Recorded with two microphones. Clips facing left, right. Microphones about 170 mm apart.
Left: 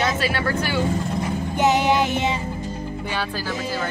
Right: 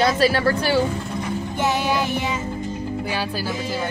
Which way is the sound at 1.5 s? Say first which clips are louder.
Left 4 dB; 20° left (ahead or behind).